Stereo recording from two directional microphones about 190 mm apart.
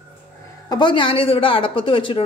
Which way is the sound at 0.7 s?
25° left (ahead or behind).